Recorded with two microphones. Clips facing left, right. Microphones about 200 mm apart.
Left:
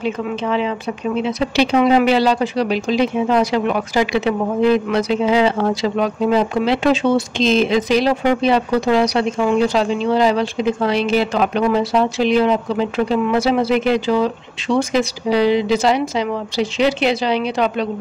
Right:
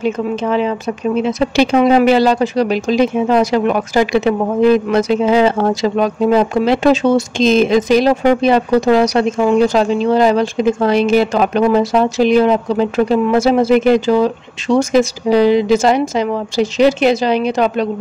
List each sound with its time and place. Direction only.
0.0 s speech: 45° right (ahead or behind)